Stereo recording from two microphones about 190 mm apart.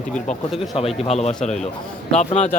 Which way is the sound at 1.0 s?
35° left (ahead or behind).